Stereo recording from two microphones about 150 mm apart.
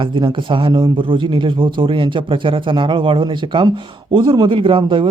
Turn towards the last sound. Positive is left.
turn(degrees=-35)  # may be behind; listen again after turning